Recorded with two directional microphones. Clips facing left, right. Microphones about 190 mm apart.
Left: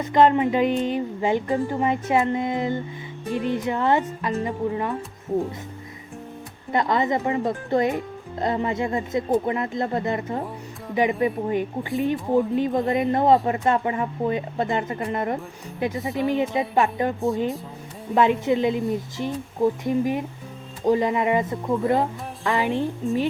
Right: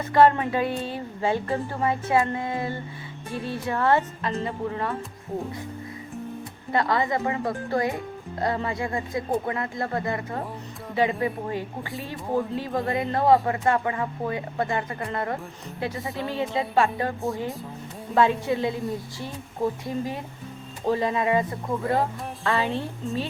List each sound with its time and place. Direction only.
0.0 s a woman's voice: 20° left (ahead or behind)
6.7 s a woman's voice: 20° left (ahead or behind)
22.4 s a woman's voice: 15° left (ahead or behind)